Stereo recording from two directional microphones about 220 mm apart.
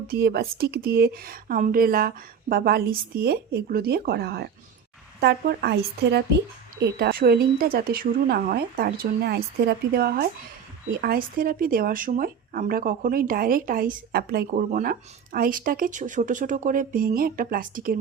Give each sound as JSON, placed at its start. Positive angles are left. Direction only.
{"t": 0.1, "sound": "speech", "side_deg": -45}